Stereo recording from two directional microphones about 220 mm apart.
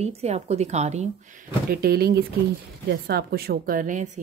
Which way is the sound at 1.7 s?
45° right (ahead or behind).